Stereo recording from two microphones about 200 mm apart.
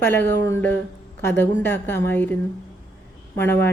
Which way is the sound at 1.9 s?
10° left (ahead or behind).